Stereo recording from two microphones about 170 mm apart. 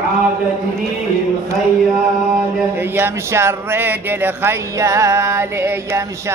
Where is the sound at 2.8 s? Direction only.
15° right (ahead or behind).